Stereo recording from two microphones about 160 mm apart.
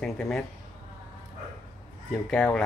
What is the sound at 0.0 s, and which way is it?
Speech, 5° left (ahead or behind).